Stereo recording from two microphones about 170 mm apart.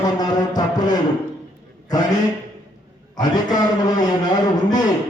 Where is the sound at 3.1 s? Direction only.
25° left (ahead or behind).